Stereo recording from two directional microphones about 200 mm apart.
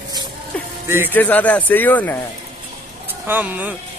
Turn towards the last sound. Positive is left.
turn(degrees=-10)  # may be behind; listen again after turning